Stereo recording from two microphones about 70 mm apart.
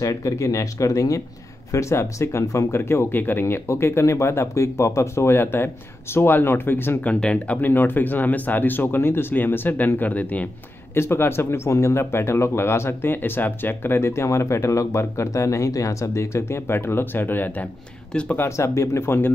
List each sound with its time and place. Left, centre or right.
0.0 s speech: left
7.1 s speech: centre
11.0 s speech: left
18.6 s speech: left